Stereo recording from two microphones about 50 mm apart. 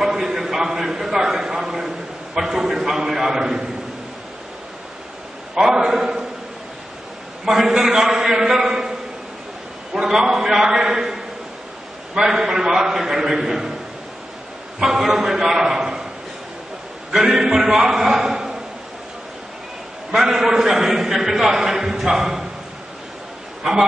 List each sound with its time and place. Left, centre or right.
0.0 s a sound: centre
5.6 s a man's voice: centre
7.4 s a man's voice: centre
10.0 s a man's voice: centre
12.2 s a man's voice: centre
14.8 s a man's voice: centre
17.1 s a man's voice: centre
20.2 s a man's voice: centre
23.6 s speech: centre